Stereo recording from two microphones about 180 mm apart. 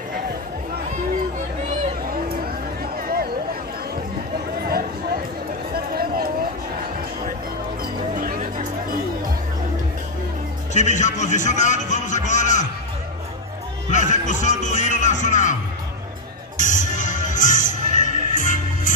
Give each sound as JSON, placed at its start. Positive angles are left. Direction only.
{"t": 2.0, "sound": "music", "side_deg": -55}
{"t": 4.6, "sound": "a sound", "side_deg": -55}
{"t": 7.8, "sound": "a sound", "side_deg": -50}
{"t": 10.7, "sound": "speech", "side_deg": 40}
{"t": 13.8, "sound": "music", "side_deg": 40}
{"t": 16.5, "sound": "music", "side_deg": 45}